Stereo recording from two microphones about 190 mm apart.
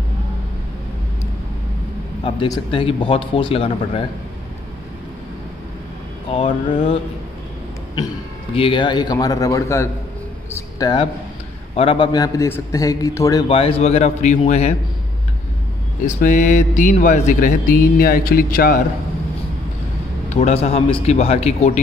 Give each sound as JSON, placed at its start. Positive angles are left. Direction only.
{"t": 2.2, "sound": "a man's voice", "side_deg": 25}
{"t": 6.3, "sound": "a man's voice", "side_deg": 30}
{"t": 8.5, "sound": "a man's voice", "side_deg": 25}
{"t": 13.5, "sound": "speech", "side_deg": 30}
{"t": 16.2, "sound": "mantra", "side_deg": 45}
{"t": 20.3, "sound": "speech", "side_deg": 35}